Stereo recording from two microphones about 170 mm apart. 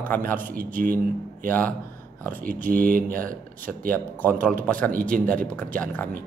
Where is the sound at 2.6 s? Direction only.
55° right (ahead or behind).